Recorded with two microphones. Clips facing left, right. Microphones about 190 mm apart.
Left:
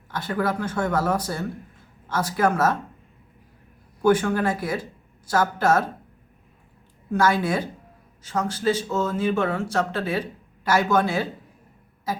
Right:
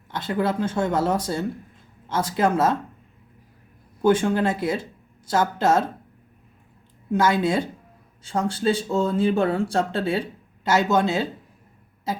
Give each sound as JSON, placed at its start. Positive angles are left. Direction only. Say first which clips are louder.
{"t": 0.1, "sound": "speech", "louder": "right 1 dB", "side_deg": -20}
{"t": 4.0, "sound": "speech", "louder": "right 1 dB", "side_deg": -25}
{"t": 7.1, "sound": "speech", "louder": "right 1 dB", "side_deg": -20}